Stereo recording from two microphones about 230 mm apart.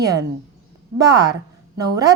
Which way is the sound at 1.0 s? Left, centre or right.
Centre.